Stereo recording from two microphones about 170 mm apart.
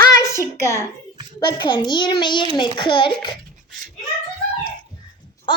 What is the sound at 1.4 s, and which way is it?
A child's voice, 25° left (ahead or behind).